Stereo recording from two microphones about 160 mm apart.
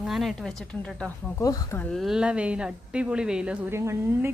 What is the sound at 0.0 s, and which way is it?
Speech, centre (ahead or behind).